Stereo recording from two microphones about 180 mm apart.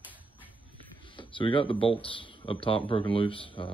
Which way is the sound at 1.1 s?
30° left (ahead or behind).